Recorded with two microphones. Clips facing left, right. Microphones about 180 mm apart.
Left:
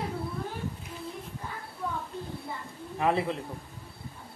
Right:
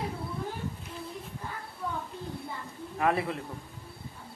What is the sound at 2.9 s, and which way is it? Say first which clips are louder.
Speech: left 1 dB; 20° left (ahead or behind).